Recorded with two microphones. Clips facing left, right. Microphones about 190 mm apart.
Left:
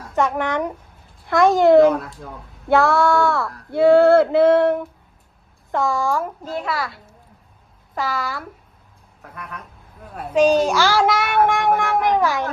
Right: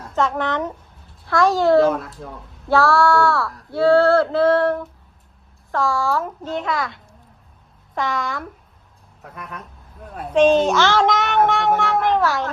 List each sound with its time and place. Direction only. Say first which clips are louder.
0.2 s speech: left 1 dB; 15° left (ahead or behind)
1.9 s speech: left 1 dB; centre (ahead or behind)
2.6 s speech: even; 20° left (ahead or behind)
11.8 s cat: even; 15° left (ahead or behind)